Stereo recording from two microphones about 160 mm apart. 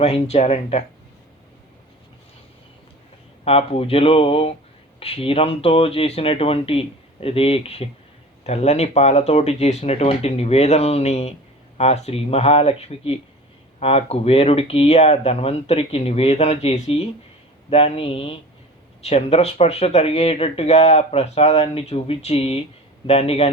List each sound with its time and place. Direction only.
0.0 s speech: 40° left (ahead or behind)
3.4 s speech: 40° left (ahead or behind)